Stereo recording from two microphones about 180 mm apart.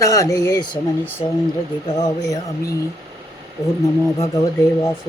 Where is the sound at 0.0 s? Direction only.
20° left (ahead or behind).